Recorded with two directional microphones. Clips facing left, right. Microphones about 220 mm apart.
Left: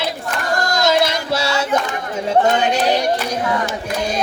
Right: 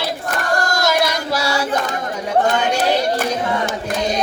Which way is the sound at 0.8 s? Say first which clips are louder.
Left 2 dB; 25° left (ahead or behind).